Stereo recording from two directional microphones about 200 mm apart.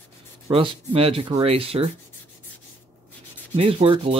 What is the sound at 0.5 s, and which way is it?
Speech, 30° right (ahead or behind).